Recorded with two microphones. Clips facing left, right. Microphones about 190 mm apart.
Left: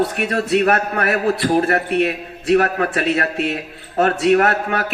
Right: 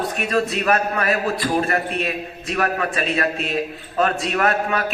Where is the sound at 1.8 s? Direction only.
65° left (ahead or behind).